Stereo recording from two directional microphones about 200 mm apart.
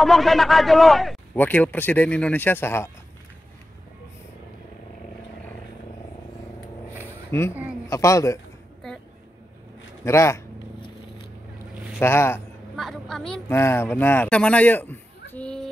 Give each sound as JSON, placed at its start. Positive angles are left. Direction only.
{"t": 0.0, "sound": "a man's voice", "side_deg": 0}
{"t": 7.2, "sound": "speech", "side_deg": 15}
{"t": 10.0, "sound": "speech", "side_deg": 15}
{"t": 12.0, "sound": "speech", "side_deg": 10}
{"t": 12.7, "sound": "a woman's voice", "side_deg": 0}
{"t": 13.3, "sound": "speech", "side_deg": 10}